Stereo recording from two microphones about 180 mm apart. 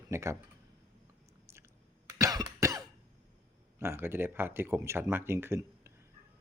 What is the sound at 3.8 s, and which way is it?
Speech, 15° right (ahead or behind).